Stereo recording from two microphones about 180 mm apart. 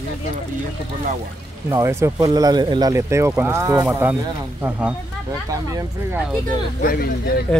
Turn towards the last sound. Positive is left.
turn(degrees=55)  # may be behind; listen again after turning